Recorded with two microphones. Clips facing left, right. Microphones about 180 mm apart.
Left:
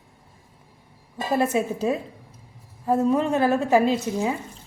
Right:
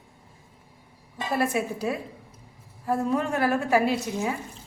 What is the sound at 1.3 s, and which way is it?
A woman's voice, 20° left (ahead or behind).